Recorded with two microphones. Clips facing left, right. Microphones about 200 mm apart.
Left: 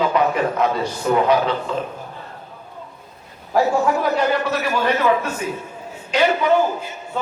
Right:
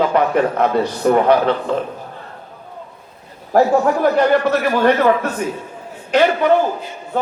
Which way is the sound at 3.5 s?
60° right (ahead or behind).